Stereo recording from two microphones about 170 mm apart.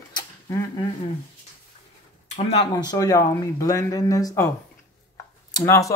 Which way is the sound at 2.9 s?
20° left (ahead or behind).